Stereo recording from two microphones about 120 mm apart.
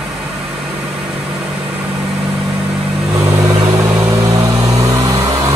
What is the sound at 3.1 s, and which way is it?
Vehicle, 25° right (ahead or behind).